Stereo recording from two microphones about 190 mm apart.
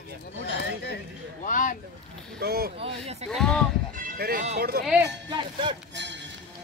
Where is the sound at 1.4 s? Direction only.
45° left (ahead or behind).